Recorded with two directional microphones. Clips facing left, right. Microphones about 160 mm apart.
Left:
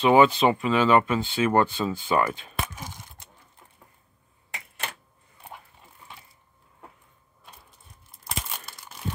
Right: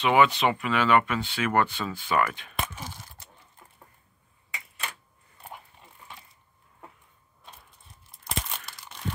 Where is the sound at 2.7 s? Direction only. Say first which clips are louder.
Even; 15° left (ahead or behind).